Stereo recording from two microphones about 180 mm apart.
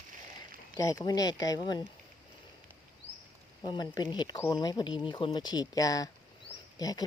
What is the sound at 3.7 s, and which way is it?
Speech, 25° left (ahead or behind).